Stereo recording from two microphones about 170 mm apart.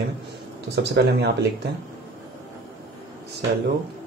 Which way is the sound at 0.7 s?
75° right (ahead or behind).